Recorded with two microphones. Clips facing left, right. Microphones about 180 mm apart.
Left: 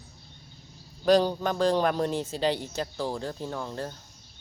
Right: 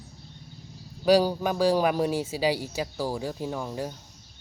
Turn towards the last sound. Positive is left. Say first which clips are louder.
# right 2 dB
turn(degrees=-10)  # may be behind; listen again after turning